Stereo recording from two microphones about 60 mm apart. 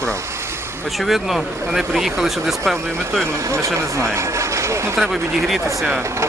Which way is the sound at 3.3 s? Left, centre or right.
Right.